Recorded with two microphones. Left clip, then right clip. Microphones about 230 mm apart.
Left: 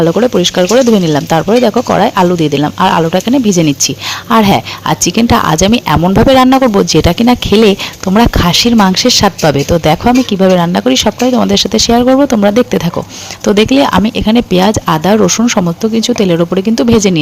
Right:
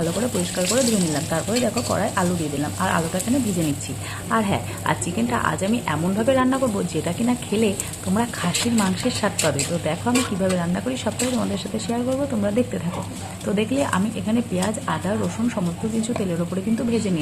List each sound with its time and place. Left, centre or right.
0.0 s a woman's voice: left